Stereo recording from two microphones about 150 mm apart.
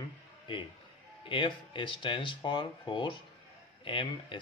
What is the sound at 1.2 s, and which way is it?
Speech, 35° left (ahead or behind).